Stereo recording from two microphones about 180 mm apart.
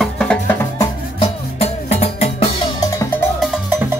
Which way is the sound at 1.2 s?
35° left (ahead or behind).